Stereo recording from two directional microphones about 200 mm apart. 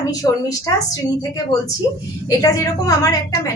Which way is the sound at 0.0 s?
20° left (ahead or behind).